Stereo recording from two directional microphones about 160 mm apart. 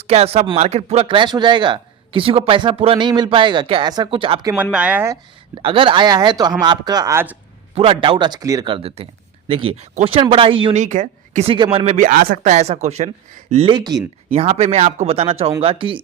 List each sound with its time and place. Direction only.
0.0 s speech: 40° right (ahead or behind)
4.5 s speech: 10° right (ahead or behind)
5.6 s speech: 35° right (ahead or behind); by 7.3 s 15° right (ahead or behind)
7.8 s speech: 35° right (ahead or behind)
10.8 s speech: 50° right (ahead or behind)
11.4 s speech: 35° right (ahead or behind)
11.9 s speech: 55° right (ahead or behind)
13.5 s speech: 35° right (ahead or behind)
14.3 s speech: 40° right (ahead or behind)